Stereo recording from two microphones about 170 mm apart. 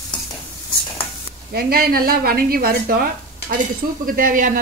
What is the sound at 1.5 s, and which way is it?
A woman's voice, 60° right (ahead or behind).